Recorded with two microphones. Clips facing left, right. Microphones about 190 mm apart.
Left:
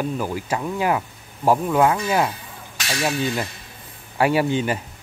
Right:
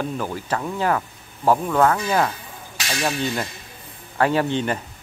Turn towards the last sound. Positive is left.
turn(degrees=10)  # may be behind; listen again after turning